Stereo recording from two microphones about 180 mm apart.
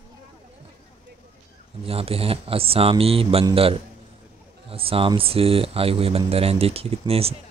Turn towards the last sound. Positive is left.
turn(degrees=-35)  # may be behind; listen again after turning